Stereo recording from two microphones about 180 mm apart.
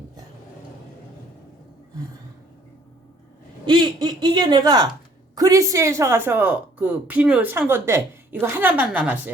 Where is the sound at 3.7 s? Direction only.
25° right (ahead or behind).